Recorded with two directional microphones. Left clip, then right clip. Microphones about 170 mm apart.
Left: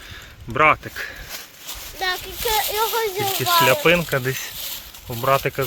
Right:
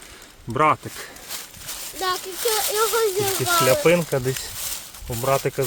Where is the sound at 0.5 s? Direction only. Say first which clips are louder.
Left 3 dB; 15° right (ahead or behind).